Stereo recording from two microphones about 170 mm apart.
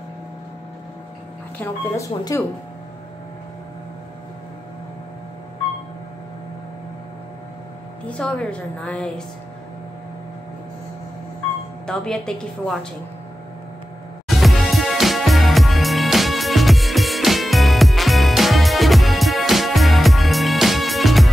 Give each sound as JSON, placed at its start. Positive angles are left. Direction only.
{"t": 1.6, "sound": "a woman's voice", "side_deg": 20}
{"t": 8.1, "sound": "a woman's voice", "side_deg": 5}
{"t": 11.8, "sound": "a woman's voice", "side_deg": 5}
{"t": 14.2, "sound": "music", "side_deg": 0}